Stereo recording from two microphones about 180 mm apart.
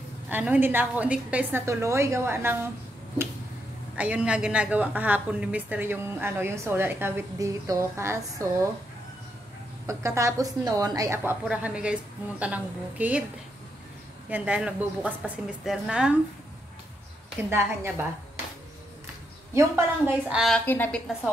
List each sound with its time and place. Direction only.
0.3 s a woman's voice: 10° right (ahead or behind)
3.9 s a woman's voice: 5° right (ahead or behind)
9.8 s a woman's voice: 15° right (ahead or behind)
11.4 s a woman's voice: 5° right (ahead or behind)
14.3 s a woman's voice: 5° right (ahead or behind)
17.5 s a woman's voice: 10° right (ahead or behind)
20.2 s a woman's voice: centre (ahead or behind)